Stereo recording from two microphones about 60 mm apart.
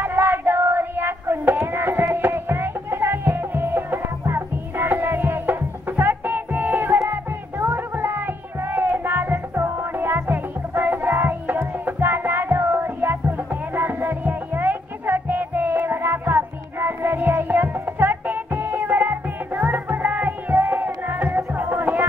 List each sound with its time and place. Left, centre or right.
0.0 s child singing: right
1.7 s music: right